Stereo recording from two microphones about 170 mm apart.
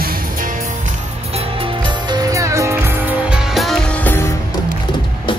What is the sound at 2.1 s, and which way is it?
Music, 20° right (ahead or behind).